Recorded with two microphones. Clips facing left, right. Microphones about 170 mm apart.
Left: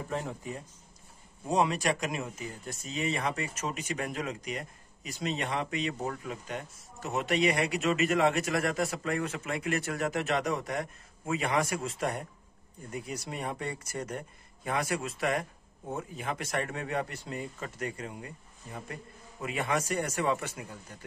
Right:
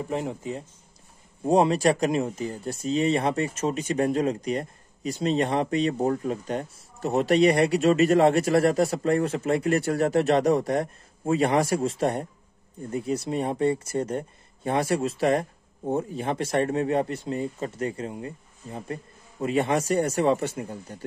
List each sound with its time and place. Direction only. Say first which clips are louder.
0.1 s speech: right 4 dB; 20° right (ahead or behind)
1.4 s speech: right 8 dB; 35° right (ahead or behind)